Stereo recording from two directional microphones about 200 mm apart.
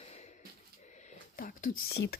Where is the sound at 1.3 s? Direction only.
45° left (ahead or behind).